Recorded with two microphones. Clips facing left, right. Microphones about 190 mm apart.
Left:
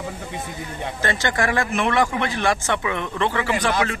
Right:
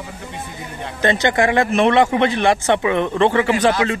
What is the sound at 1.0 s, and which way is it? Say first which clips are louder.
Speech: right 7 dB; 20° right (ahead or behind).